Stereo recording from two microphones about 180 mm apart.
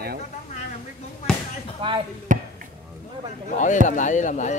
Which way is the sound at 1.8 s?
30° right (ahead or behind).